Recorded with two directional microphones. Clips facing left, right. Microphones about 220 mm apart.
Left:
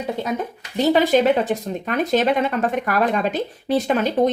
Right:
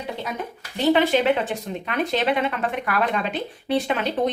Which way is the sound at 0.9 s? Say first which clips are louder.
Left 6 dB; 40° left (ahead or behind).